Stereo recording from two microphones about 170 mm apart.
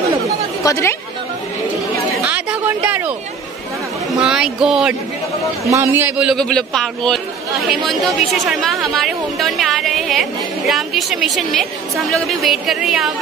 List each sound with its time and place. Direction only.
0.7 s speech: 15° left (ahead or behind)
2.2 s a sound: 10° right (ahead or behind)
4.2 s a woman's voice: 5° right (ahead or behind)